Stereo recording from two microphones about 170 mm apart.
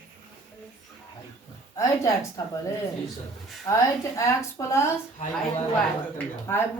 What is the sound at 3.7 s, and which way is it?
Speech, 20° left (ahead or behind).